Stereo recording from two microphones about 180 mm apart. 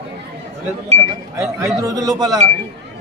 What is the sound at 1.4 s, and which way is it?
A man's voice, 15° right (ahead or behind).